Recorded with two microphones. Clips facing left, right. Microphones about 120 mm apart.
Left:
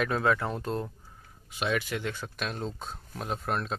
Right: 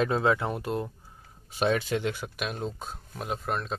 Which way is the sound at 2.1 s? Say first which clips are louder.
Right 2 dB; 10° right (ahead or behind).